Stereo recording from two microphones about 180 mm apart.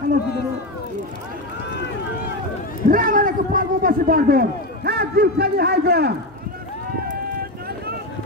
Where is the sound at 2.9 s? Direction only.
50° right (ahead or behind).